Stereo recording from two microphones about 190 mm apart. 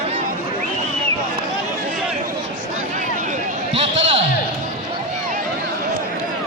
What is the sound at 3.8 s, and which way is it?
Basketball bounce, 30° right (ahead or behind).